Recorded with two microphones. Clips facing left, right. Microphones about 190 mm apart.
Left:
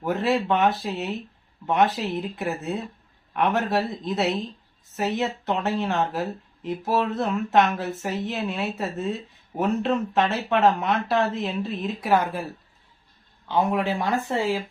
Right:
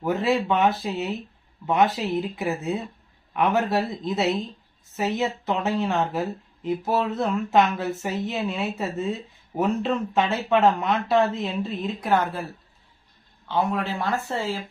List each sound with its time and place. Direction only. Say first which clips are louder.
0.0 s speech: right 1 dB; centre (ahead or behind)
13.5 s speech: left 2 dB; 15° left (ahead or behind)